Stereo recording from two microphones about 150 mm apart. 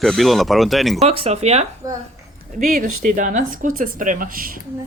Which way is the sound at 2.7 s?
60° right (ahead or behind).